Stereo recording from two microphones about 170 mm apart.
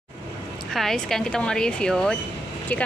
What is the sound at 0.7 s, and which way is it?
A woman's voice, centre (ahead or behind).